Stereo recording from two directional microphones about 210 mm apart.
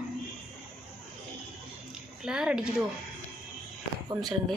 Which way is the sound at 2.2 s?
5° right (ahead or behind).